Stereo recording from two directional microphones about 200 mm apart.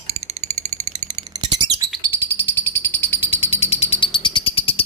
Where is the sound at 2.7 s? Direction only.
10° left (ahead or behind).